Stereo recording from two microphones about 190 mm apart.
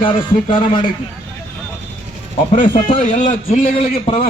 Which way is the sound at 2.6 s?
40° left (ahead or behind).